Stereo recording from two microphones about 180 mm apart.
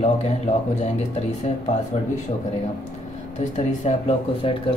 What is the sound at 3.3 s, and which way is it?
Speech, 40° left (ahead or behind).